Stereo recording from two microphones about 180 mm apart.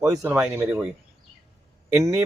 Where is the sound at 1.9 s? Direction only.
15° right (ahead or behind).